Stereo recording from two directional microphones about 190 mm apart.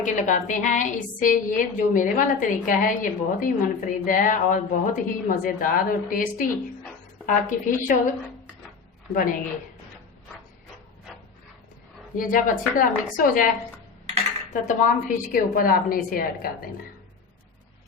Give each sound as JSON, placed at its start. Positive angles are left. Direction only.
{"t": 0.0, "sound": "a woman's voice", "side_deg": 40}
{"t": 12.1, "sound": "a woman's voice", "side_deg": 45}
{"t": 14.5, "sound": "a woman's voice", "side_deg": 40}